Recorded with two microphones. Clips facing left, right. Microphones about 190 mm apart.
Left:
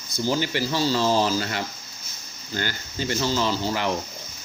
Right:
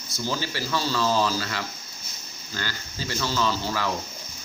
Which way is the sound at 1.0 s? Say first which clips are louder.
Even; 15° left (ahead or behind).